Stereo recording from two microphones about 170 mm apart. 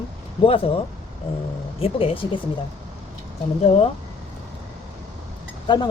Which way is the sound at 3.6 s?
40° left (ahead or behind).